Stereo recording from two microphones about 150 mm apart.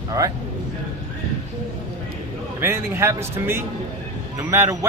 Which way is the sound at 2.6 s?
15° right (ahead or behind).